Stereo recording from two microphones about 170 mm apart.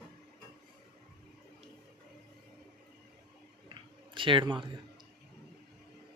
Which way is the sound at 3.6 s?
30° right (ahead or behind).